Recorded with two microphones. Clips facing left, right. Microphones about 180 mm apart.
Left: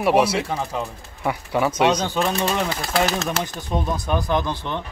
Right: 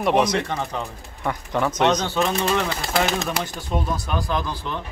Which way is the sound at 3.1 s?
15° right (ahead or behind).